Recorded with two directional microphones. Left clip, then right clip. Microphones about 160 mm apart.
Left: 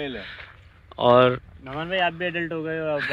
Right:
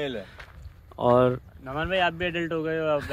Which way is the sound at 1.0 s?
15° right (ahead or behind).